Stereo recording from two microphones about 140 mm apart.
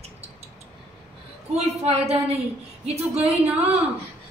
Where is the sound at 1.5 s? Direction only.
50° right (ahead or behind).